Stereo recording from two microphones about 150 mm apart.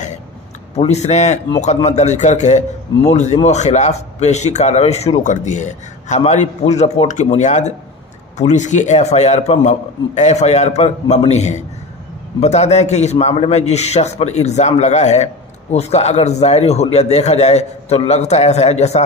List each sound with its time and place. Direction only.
0.7 s a man's voice: 45° left (ahead or behind)